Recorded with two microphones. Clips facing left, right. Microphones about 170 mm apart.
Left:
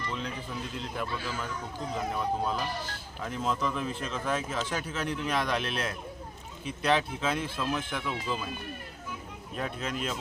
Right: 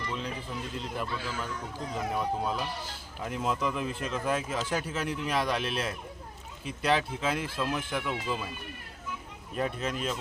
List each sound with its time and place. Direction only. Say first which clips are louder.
0.8 s speech: even; centre (ahead or behind)
9.6 s speech: right 2 dB; 5° right (ahead or behind)